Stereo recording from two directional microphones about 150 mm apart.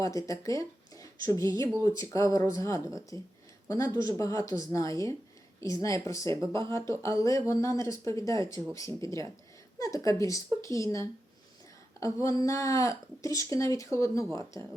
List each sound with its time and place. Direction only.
0.0 s speech: 20° left (ahead or behind)
6.4 s speech: 30° right (ahead or behind)
6.7 s a woman's voice: 20° left (ahead or behind)